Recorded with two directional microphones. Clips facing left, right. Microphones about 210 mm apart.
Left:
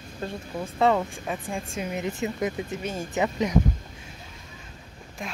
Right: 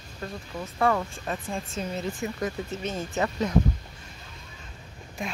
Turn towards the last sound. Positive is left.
turn(degrees=0)  # may be behind; listen again after turning